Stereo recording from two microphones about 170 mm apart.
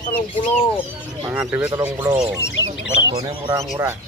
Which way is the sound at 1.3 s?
10° right (ahead or behind).